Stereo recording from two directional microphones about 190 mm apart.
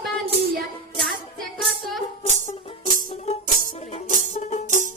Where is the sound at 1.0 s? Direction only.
Centre (ahead or behind).